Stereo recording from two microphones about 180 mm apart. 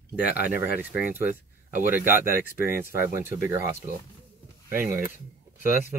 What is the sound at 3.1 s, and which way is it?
Speech, 15° right (ahead or behind).